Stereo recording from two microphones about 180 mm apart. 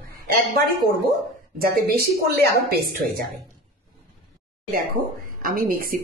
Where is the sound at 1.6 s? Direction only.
60° right (ahead or behind).